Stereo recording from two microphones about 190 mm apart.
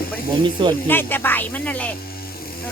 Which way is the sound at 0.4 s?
25° right (ahead or behind).